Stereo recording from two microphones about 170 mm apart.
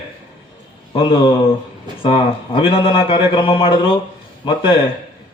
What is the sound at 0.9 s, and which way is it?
A man's voice, 30° left (ahead or behind).